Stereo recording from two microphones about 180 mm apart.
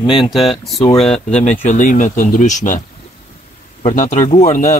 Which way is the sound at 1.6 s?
45° left (ahead or behind).